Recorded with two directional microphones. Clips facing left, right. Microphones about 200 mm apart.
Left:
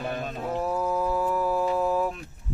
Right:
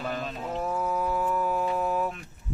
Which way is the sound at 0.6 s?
35° left (ahead or behind).